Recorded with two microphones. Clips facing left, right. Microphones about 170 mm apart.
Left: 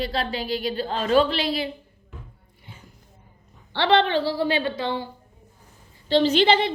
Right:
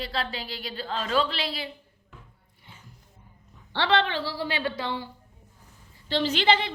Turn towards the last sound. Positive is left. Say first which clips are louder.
# left 6 dB
turn(degrees=20)  # may be behind; listen again after turning